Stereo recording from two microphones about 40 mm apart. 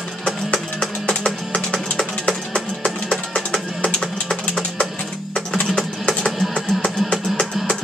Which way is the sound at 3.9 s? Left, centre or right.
Centre.